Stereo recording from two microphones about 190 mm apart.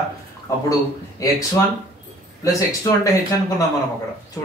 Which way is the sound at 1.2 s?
15° left (ahead or behind).